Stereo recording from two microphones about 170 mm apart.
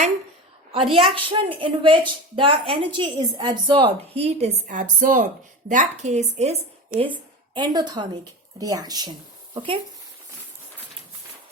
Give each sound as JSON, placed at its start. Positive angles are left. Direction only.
{"t": 0.7, "sound": "a woman's voice", "side_deg": -35}
{"t": 4.6, "sound": "a woman's voice", "side_deg": -50}